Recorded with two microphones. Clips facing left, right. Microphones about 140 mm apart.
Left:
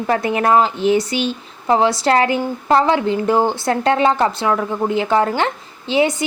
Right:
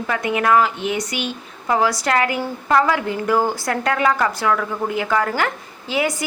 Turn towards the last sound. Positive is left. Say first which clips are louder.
# left 5 dB
turn(degrees=25)  # may be behind; listen again after turning